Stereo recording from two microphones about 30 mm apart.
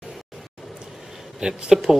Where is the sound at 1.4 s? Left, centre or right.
Right.